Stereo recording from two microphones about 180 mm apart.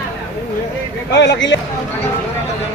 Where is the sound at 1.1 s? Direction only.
75° left (ahead or behind).